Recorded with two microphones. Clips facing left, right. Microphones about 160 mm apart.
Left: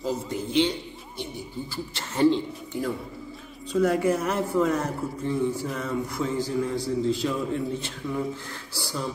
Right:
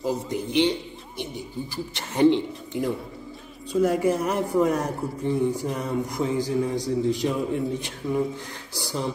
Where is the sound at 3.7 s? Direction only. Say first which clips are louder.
Right 1 dB; 10° right (ahead or behind).